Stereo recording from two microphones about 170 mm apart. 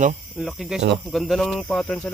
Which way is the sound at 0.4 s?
Centre (ahead or behind).